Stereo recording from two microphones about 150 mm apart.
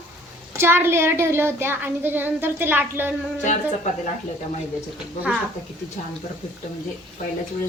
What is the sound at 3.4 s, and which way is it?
Speech, 55° left (ahead or behind).